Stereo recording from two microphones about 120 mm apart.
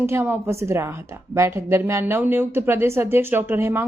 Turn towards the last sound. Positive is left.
turn(degrees=-20)  # may be behind; listen again after turning